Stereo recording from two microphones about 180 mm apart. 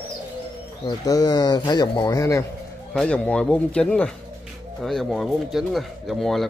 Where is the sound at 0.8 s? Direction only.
20° left (ahead or behind).